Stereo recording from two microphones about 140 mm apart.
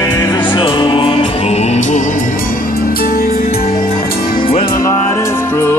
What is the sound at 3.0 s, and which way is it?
Music, 90° left.